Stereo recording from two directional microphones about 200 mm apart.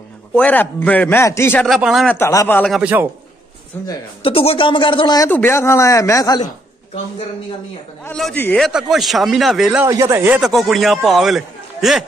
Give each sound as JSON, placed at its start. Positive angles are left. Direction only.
{"t": 0.4, "sound": "a man's voice", "side_deg": 10}
{"t": 2.1, "sound": "a man's voice", "side_deg": 10}
{"t": 2.7, "sound": "speech", "side_deg": -5}
{"t": 3.8, "sound": "a man's voice", "side_deg": 25}
{"t": 8.0, "sound": "a man's voice", "side_deg": 5}
{"t": 9.8, "sound": "a man's voice", "side_deg": -15}